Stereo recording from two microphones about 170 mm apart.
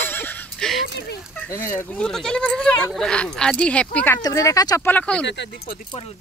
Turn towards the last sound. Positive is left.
turn(degrees=65)  # may be behind; listen again after turning